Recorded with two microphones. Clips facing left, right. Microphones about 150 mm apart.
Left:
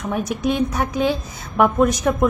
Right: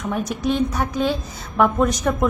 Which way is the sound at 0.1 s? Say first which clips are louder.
Left 1 dB; 10° left (ahead or behind).